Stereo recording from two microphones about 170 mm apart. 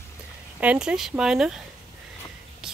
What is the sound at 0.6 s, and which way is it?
Speech, 5° right (ahead or behind).